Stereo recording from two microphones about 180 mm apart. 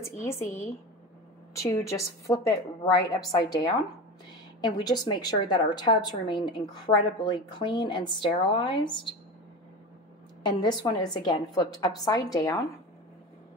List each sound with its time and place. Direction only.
0.0 s a woman's voice: 15° left (ahead or behind)
10.6 s a woman's voice: 25° left (ahead or behind)